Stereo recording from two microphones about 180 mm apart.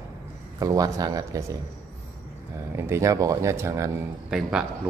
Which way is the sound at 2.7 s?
15° right (ahead or behind).